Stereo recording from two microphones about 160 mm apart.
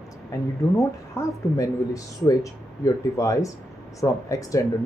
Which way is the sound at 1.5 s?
20° left (ahead or behind).